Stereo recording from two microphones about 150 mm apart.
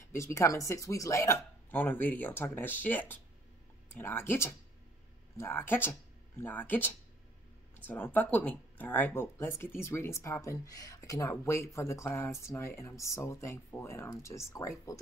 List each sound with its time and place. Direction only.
0.1 s speech: 20° left (ahead or behind)